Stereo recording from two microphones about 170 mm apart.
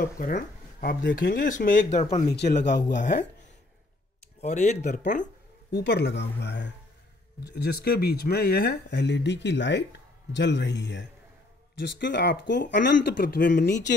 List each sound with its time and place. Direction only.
0.0 s speech: 55° left (ahead or behind)
1.9 s speech: 40° left (ahead or behind)
4.4 s speech: 45° left (ahead or behind)
5.7 s speech: 80° left
7.6 s speech: 70° left (ahead or behind); by 13.9 s 85° left